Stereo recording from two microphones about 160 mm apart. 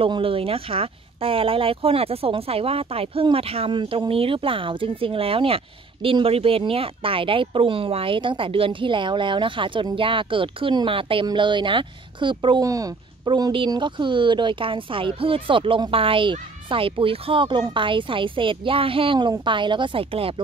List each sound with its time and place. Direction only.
0.0 s speech: 35° right (ahead or behind)